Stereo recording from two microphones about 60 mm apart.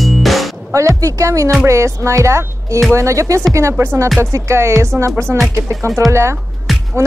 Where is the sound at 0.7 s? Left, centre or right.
Right.